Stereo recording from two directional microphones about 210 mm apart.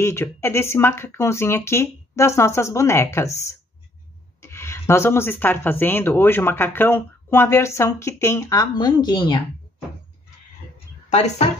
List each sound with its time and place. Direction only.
0.0 s speech: 10° left (ahead or behind)
4.4 s speech: 10° left (ahead or behind)
11.1 s speech: 30° left (ahead or behind)